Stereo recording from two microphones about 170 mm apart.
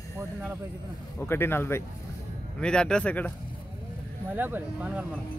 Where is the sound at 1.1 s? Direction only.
15° left (ahead or behind).